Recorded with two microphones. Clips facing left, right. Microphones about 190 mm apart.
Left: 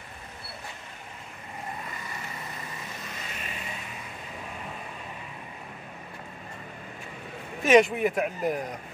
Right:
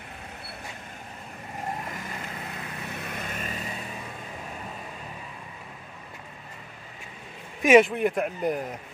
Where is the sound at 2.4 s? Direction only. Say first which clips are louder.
Right 3 dB; 65° right (ahead or behind); by 3.6 s 45° right (ahead or behind).